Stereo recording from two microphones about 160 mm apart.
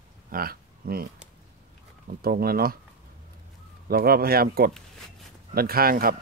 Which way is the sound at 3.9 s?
70° right (ahead or behind).